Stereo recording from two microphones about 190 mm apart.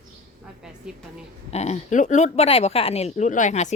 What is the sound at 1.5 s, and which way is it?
Speech, 35° left (ahead or behind).